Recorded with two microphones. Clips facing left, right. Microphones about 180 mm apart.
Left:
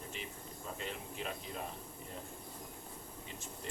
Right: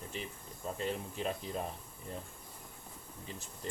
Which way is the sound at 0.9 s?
35° right (ahead or behind).